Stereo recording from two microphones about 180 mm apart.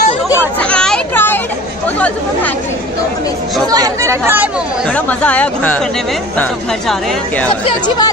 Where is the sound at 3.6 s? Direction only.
20° right (ahead or behind).